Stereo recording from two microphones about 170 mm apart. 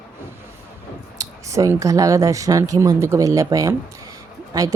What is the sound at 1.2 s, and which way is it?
Speech, 20° right (ahead or behind).